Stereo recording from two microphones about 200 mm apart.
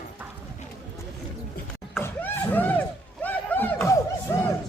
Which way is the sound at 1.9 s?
10° left (ahead or behind).